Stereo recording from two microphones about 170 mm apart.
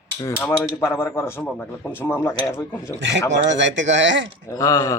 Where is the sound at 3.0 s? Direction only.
90° right.